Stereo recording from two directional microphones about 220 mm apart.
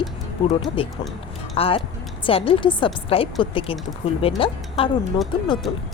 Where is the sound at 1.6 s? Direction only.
25° left (ahead or behind).